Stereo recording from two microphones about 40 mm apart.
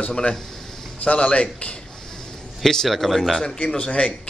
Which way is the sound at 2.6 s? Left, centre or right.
Centre.